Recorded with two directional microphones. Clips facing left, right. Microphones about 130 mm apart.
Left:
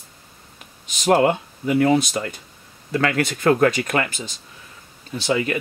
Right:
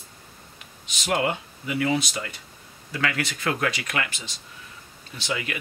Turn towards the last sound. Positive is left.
turn(degrees=40)  # may be behind; listen again after turning